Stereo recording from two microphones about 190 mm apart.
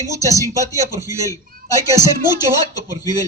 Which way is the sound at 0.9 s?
15° right (ahead or behind).